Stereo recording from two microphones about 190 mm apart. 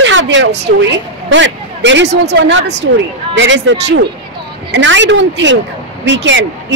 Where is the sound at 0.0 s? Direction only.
80° right.